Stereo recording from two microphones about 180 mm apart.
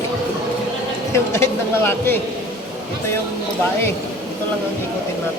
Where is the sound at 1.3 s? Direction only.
15° left (ahead or behind).